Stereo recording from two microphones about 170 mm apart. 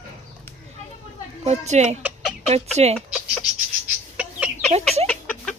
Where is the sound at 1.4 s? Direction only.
40° right (ahead or behind).